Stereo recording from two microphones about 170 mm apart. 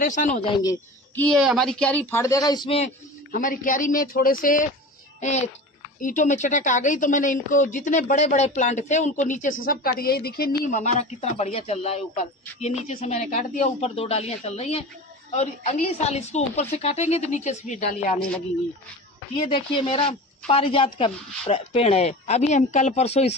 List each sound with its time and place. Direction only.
0.0 s speech: 50° left (ahead or behind)
0.4 s speech: 25° left (ahead or behind)
1.2 s speech: centre (ahead or behind); by 2.8 s 25° left (ahead or behind)
3.3 s speech: 50° left (ahead or behind)
5.2 s speech: 45° left (ahead or behind)
19.5 s speech: 30° left (ahead or behind)